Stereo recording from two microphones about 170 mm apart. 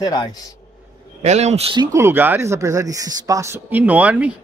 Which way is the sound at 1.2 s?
40° right (ahead or behind).